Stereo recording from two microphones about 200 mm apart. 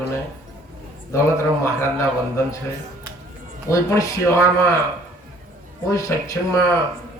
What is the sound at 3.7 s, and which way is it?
Speech, 15° left (ahead or behind).